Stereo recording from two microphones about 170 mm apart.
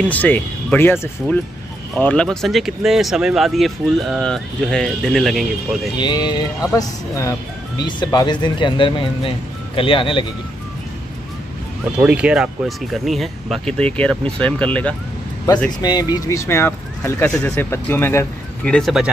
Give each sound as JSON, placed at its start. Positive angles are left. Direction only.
{"t": 0.0, "sound": "speech", "side_deg": 10}
{"t": 2.0, "sound": "speech", "side_deg": 5}
{"t": 5.9, "sound": "speech", "side_deg": 25}
{"t": 12.0, "sound": "speech", "side_deg": -5}
{"t": 15.8, "sound": "speech", "side_deg": 25}